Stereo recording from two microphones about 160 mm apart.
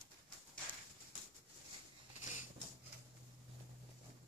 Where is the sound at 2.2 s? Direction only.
50° left (ahead or behind).